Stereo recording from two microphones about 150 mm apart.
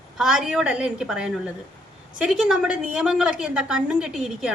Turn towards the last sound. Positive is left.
turn(degrees=-5)  # may be behind; listen again after turning